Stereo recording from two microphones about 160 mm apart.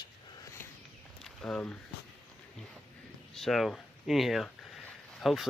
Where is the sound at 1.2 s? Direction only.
5° left (ahead or behind).